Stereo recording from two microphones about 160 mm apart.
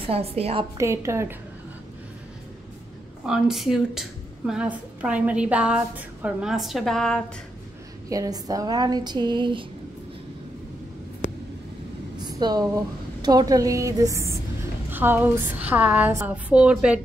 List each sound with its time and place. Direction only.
0.0 s a woman's voice: 40° right (ahead or behind)
0.7 s a woman's voice: 20° right (ahead or behind)
3.3 s a woman's voice: 5° right (ahead or behind)
8.1 s speech: 20° right (ahead or behind)
12.2 s a woman's voice: 25° right (ahead or behind); by 17.0 s 5° right (ahead or behind)